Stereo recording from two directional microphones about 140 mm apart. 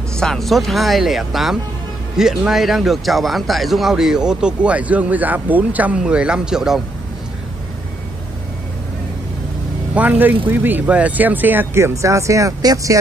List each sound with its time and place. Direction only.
0.2 s speech: 5° left (ahead or behind)
9.9 s speech: 10° right (ahead or behind)